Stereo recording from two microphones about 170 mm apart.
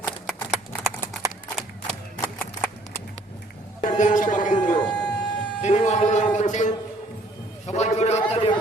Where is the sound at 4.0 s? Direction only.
50° left (ahead or behind).